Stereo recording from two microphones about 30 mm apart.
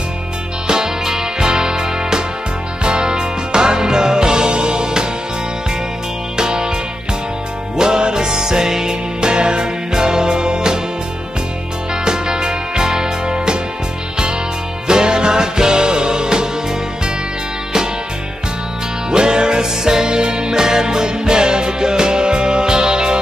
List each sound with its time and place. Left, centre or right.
0.7 s music: right
6.3 s music: right
7.7 s music: right
9.2 s music: right
11.9 s music: right
14.9 s music: right
19.0 s music: right